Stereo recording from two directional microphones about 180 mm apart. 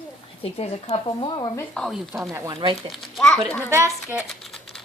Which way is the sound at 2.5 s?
25° right (ahead or behind).